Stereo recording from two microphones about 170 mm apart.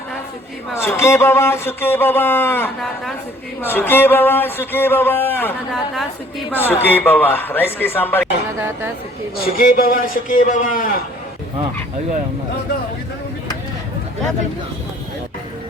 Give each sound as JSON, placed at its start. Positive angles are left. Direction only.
{"t": 0.8, "sound": "speech", "side_deg": 15}
{"t": 5.7, "sound": "a woman's voice", "side_deg": 0}
{"t": 9.4, "sound": "a man's voice", "side_deg": 55}